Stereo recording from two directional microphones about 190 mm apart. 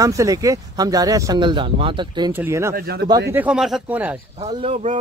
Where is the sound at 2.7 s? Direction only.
55° right (ahead or behind).